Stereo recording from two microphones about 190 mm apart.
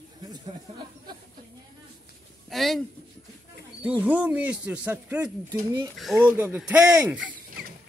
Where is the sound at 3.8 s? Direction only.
10° right (ahead or behind).